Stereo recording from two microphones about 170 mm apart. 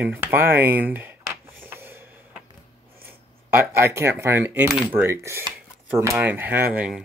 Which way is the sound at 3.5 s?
15° right (ahead or behind).